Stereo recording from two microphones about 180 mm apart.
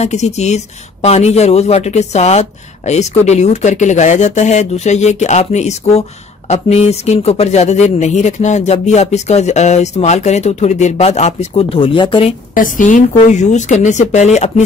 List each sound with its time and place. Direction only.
0.0 s speech: 40° left (ahead or behind)
12.5 s speech: 45° left (ahead or behind)